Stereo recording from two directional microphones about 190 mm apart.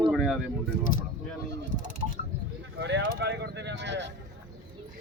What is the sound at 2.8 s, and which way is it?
Speech, 65° right (ahead or behind).